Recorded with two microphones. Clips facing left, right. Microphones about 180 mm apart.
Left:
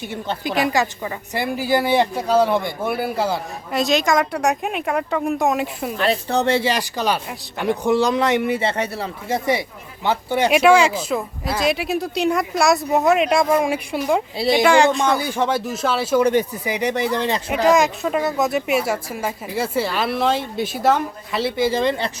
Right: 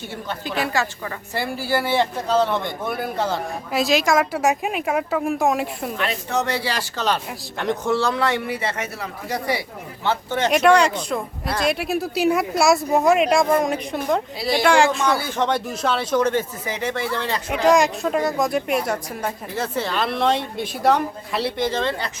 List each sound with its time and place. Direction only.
0.1 s a man's voice: 20° left (ahead or behind)
3.7 s a woman's voice: centre (ahead or behind)
6.0 s a man's voice: 35° left (ahead or behind); by 14.2 s 10° left (ahead or behind)
14.3 s speech: 25° left (ahead or behind)
14.6 s a woman's voice: centre (ahead or behind)
15.1 s a man's voice: 15° left (ahead or behind)
17.5 s a woman's voice: centre (ahead or behind)
21.7 s a man's voice: 10° left (ahead or behind)